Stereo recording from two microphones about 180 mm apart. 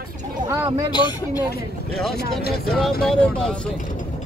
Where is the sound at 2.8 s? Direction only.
5° left (ahead or behind).